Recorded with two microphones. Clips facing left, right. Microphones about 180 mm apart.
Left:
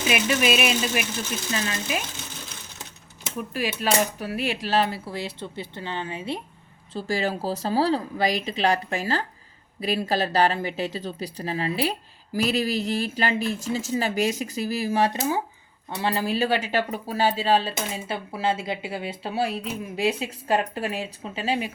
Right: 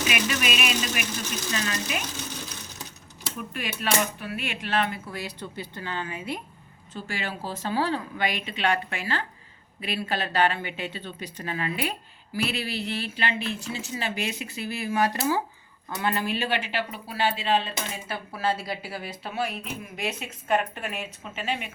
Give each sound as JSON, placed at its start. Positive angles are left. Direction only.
{"t": 0.1, "sound": "speech", "side_deg": 30}
{"t": 3.3, "sound": "speech", "side_deg": 35}
{"t": 6.9, "sound": "speech", "side_deg": 35}
{"t": 15.9, "sound": "speech", "side_deg": 30}